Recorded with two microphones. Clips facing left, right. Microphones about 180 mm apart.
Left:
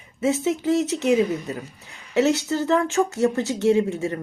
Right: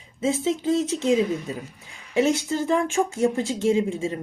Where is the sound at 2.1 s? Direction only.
10° right (ahead or behind).